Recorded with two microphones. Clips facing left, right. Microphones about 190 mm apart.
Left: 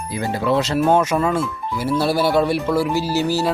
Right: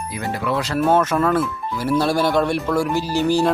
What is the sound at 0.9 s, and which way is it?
Speech, 10° left (ahead or behind).